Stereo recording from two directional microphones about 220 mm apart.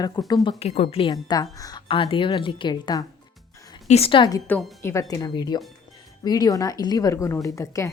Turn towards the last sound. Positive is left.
turn(degrees=15)  # may be behind; listen again after turning